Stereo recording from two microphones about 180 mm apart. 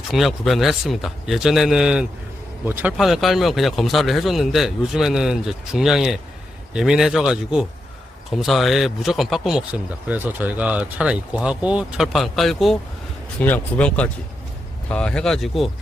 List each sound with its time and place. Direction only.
0.1 s speech: centre (ahead or behind)
3.0 s speech: centre (ahead or behind)